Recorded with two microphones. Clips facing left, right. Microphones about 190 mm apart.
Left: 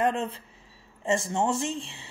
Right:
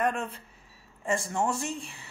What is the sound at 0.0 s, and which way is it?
Speech, 25° left (ahead or behind).